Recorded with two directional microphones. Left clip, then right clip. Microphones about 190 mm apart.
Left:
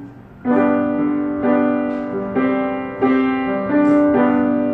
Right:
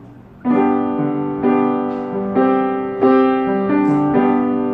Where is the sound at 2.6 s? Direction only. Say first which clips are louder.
Right 3 dB; 35° right (ahead or behind).